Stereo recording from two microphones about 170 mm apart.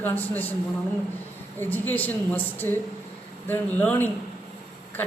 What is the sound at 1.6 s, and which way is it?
A woman's voice, 10° left (ahead or behind).